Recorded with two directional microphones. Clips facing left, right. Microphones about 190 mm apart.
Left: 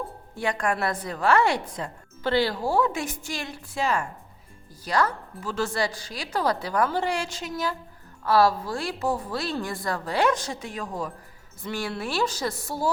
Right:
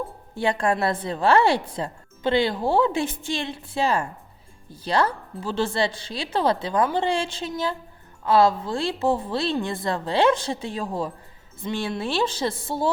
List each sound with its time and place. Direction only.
0.3 s a woman's voice: 30° right (ahead or behind)